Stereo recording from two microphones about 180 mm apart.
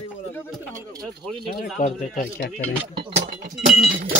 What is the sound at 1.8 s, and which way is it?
Speech, 50° left (ahead or behind).